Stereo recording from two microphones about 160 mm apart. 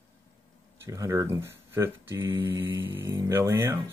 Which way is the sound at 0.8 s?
20° right (ahead or behind).